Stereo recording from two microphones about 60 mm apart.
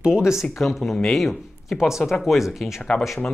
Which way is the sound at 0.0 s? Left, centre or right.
Centre.